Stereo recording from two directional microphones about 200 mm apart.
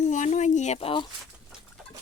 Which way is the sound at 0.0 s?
35° left (ahead or behind).